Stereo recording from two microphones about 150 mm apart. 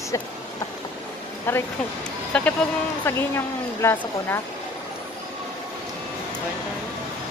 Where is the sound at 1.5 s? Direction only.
15° left (ahead or behind).